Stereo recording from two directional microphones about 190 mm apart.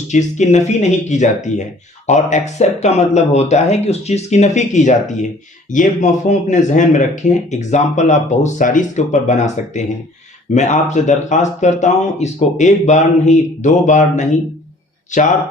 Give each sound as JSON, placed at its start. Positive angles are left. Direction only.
{"t": 0.1, "sound": "speech", "side_deg": 40}